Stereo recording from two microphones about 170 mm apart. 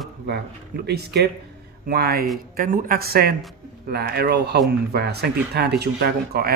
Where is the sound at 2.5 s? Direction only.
55° right (ahead or behind).